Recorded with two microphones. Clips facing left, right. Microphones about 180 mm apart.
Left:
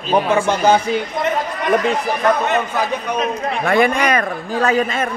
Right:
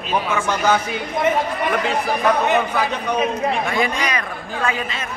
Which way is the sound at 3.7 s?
55° left (ahead or behind).